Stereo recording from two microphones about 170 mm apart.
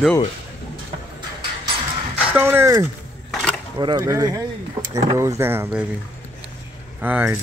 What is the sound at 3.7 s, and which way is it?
Speech, 25° right (ahead or behind).